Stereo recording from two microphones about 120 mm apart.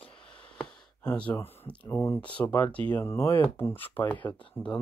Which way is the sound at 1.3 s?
15° left (ahead or behind).